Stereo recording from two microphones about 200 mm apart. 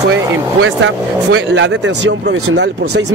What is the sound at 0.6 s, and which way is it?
Speech, 60° right (ahead or behind).